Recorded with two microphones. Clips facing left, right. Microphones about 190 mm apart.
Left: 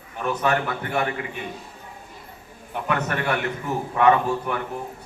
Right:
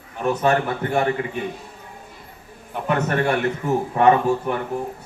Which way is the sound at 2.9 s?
30° right (ahead or behind).